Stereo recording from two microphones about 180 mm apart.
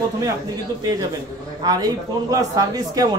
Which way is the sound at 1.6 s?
20° right (ahead or behind).